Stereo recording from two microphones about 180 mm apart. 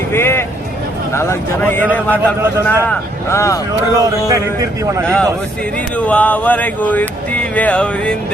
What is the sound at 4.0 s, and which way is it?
A man's voice, 20° right (ahead or behind).